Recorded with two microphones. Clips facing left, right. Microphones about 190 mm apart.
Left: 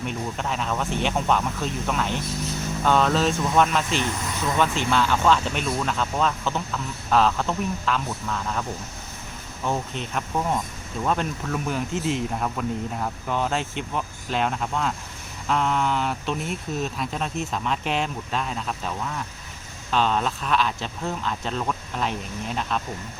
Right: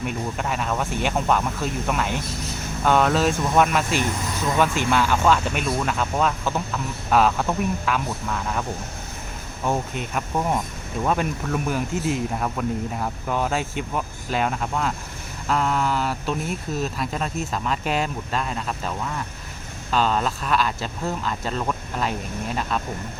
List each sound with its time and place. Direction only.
0.0 s speech: 5° right (ahead or behind)
9.6 s speech: 10° right (ahead or behind)
19.9 s speech: centre (ahead or behind)